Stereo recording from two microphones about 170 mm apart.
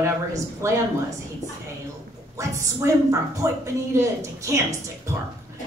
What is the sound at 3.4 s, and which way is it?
A woman's voice, 20° right (ahead or behind).